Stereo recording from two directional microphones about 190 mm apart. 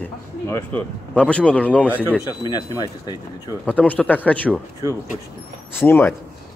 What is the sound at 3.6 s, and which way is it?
Speech, 5° left (ahead or behind).